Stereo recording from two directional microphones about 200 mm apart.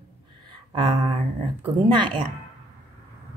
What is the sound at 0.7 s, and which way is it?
Speech, 30° right (ahead or behind).